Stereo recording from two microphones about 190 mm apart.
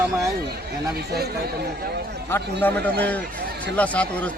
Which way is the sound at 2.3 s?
10° left (ahead or behind).